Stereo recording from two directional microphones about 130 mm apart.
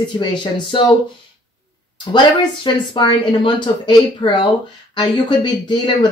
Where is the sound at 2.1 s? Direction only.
35° left (ahead or behind).